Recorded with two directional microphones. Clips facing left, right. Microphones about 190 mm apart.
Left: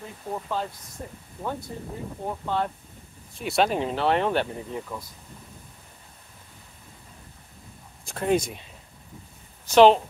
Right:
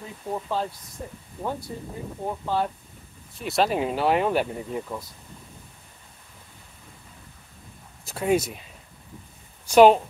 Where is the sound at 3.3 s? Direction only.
Centre (ahead or behind).